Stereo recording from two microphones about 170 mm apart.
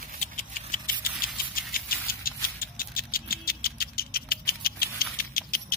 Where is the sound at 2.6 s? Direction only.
60° left (ahead or behind).